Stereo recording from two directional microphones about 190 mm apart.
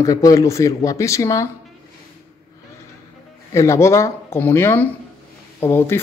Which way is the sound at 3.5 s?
15° left (ahead or behind).